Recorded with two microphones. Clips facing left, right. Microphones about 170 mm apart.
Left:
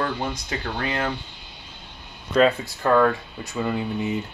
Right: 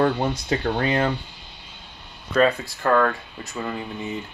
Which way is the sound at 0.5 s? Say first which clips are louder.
Right 6 dB; 20° right (ahead or behind).